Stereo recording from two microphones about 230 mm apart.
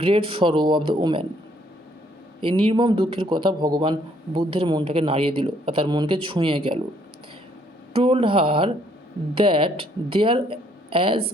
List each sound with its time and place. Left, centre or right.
0.0 s speech: right
2.4 s speech: right
7.9 s speech: right